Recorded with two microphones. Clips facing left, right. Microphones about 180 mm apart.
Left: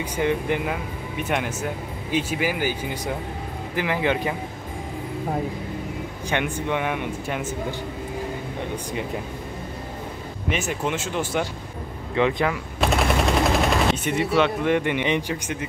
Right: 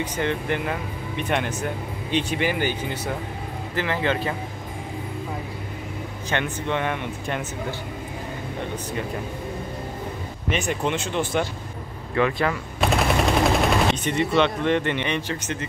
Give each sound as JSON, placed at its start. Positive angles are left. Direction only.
{"t": 0.0, "sound": "speech", "side_deg": 10}
{"t": 6.3, "sound": "speech", "side_deg": 10}
{"t": 10.5, "sound": "speech", "side_deg": 5}
{"t": 12.2, "sound": "speech", "side_deg": 20}
{"t": 12.4, "sound": "speech", "side_deg": 0}